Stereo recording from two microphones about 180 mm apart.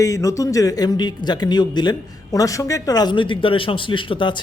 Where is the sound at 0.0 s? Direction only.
20° left (ahead or behind).